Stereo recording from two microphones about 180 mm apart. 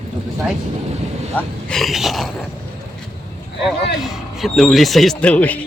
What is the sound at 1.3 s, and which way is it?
Speech, centre (ahead or behind).